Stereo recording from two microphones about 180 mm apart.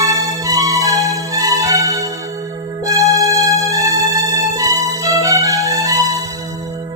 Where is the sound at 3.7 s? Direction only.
20° right (ahead or behind).